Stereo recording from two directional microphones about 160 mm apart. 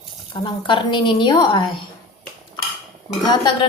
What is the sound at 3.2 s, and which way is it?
Speech, 25° left (ahead or behind).